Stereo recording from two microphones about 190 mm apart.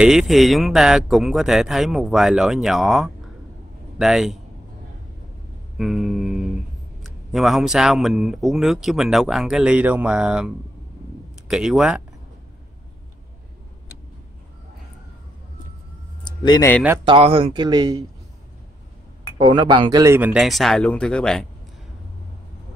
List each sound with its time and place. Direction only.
0.0 s speech: centre (ahead or behind)
5.8 s speech: centre (ahead or behind)
16.3 s speech: 20° left (ahead or behind)
17.0 s speech: 30° right (ahead or behind)
19.3 s speech: 25° right (ahead or behind); by 21.5 s 5° left (ahead or behind)